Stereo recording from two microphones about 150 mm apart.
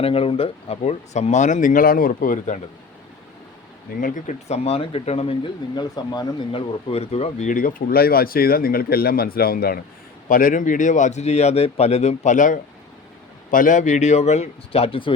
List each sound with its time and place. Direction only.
0.0 s speech: 40° left (ahead or behind); by 2.6 s 65° left (ahead or behind)
4.0 s speech: 55° left (ahead or behind); by 9.8 s 90° left
10.2 s speech: 65° left (ahead or behind); by 15.1 s 40° left (ahead or behind)